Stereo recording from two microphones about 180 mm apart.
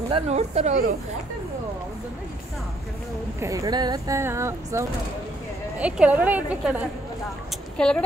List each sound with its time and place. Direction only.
0.1 s speech: 40° right (ahead or behind)
3.3 s speech: 15° right (ahead or behind)
7.7 s speech: 5° left (ahead or behind)